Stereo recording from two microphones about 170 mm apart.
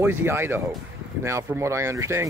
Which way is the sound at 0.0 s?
15° right (ahead or behind).